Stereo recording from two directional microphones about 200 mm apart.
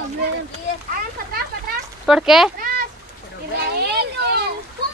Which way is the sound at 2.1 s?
Centre (ahead or behind).